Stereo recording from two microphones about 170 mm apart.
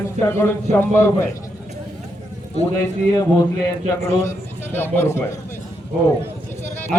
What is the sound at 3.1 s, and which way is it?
A man's voice, 20° left (ahead or behind).